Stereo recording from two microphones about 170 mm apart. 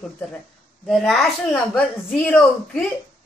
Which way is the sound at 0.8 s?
Centre (ahead or behind).